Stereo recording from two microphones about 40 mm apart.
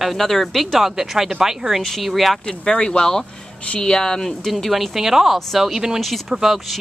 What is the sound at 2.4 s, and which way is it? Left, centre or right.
Speech, centre.